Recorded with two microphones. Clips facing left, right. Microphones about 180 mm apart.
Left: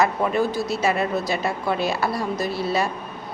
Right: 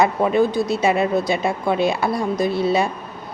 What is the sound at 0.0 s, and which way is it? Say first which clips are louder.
Speech: right 4 dB; 20° right (ahead or behind).